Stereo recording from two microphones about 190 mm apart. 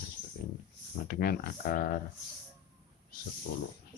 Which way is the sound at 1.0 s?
55° left (ahead or behind).